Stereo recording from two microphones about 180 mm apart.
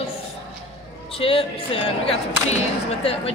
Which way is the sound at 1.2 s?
30° left (ahead or behind).